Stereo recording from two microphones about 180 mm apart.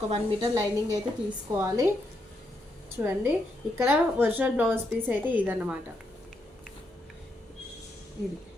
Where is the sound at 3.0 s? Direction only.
10° right (ahead or behind).